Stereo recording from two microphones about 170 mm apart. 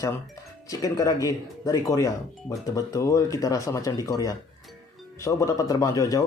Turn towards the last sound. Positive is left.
turn(degrees=20)  # may be behind; listen again after turning